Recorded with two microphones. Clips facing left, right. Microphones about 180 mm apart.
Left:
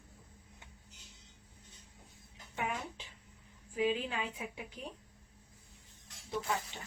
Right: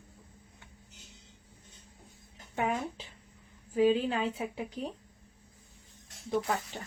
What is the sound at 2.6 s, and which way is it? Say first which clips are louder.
Speech: right 7 dB; 40° right (ahead or behind).